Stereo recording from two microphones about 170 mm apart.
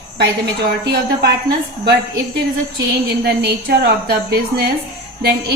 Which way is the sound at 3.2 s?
70° right (ahead or behind).